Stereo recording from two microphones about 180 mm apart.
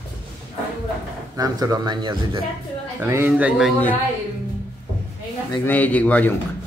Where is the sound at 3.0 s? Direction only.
10° right (ahead or behind).